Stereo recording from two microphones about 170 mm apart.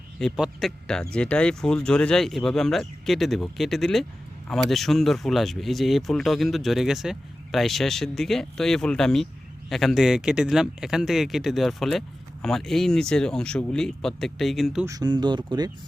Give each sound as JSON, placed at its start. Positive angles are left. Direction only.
{"t": 0.2, "sound": "speech", "side_deg": 0}
{"t": 14.8, "sound": "speech", "side_deg": -20}